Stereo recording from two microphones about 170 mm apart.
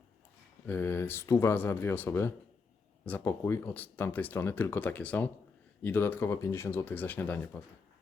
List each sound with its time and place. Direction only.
0.7 s speech: 10° left (ahead or behind)